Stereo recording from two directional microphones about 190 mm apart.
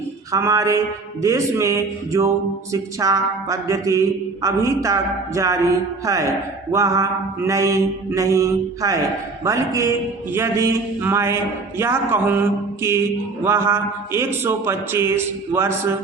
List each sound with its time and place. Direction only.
0.3 s speech: 15° right (ahead or behind)